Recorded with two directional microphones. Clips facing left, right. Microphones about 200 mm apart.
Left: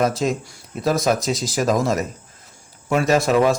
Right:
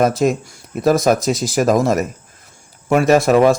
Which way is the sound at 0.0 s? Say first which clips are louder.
Right 5 dB; 55° right (ahead or behind).